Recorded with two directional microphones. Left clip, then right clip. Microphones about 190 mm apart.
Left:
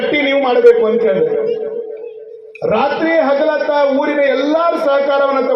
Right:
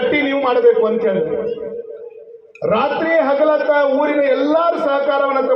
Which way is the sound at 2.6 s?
50° left (ahead or behind).